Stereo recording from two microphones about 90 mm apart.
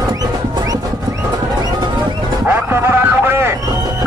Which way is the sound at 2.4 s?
25° right (ahead or behind).